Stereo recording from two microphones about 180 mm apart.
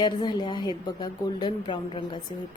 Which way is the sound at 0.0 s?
25° left (ahead or behind).